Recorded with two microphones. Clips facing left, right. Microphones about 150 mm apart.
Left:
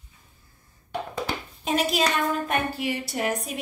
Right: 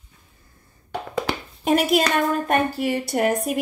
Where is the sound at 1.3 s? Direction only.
90° right.